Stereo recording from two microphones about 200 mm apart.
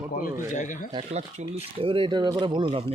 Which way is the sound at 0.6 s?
40° left (ahead or behind).